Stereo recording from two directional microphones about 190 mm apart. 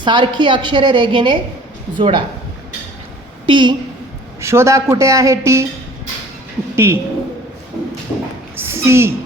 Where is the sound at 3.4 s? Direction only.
25° right (ahead or behind).